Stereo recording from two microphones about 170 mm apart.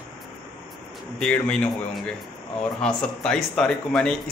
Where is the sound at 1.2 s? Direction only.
10° left (ahead or behind).